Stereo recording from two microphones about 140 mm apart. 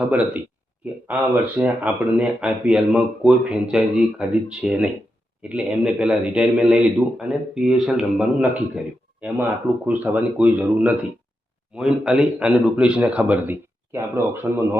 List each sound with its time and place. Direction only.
0.1 s a man's voice: 5° right (ahead or behind)
9.8 s a man's voice: 10° right (ahead or behind)